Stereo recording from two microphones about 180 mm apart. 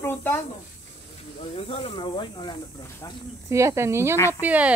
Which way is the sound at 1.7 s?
30° left (ahead or behind).